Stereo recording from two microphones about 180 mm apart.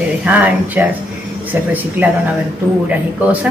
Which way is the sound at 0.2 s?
10° right (ahead or behind).